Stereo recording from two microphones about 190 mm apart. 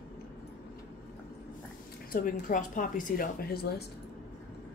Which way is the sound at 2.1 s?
45° left (ahead or behind).